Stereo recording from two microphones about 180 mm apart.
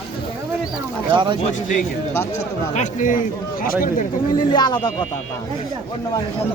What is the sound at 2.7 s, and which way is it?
A man's voice, 45° left (ahead or behind).